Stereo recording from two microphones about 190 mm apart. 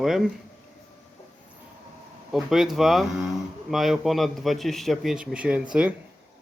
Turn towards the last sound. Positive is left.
turn(degrees=-5)  # may be behind; listen again after turning